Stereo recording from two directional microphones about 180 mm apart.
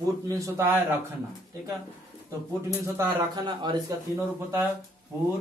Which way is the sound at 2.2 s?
15° right (ahead or behind).